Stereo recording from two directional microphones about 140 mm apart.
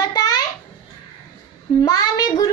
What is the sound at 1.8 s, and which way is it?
Speech, 25° left (ahead or behind).